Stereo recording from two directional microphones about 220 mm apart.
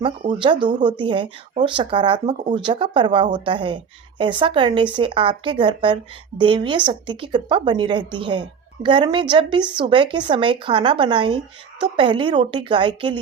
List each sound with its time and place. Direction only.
0.0 s a woman's voice: 25° right (ahead or behind)